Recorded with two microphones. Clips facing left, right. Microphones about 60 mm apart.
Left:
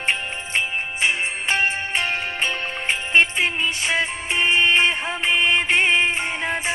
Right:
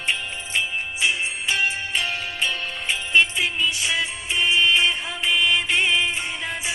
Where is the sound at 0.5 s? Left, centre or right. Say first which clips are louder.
Left 2 dB; left.